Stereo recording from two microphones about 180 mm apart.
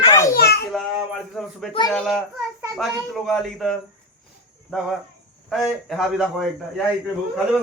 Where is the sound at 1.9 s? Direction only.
Centre (ahead or behind).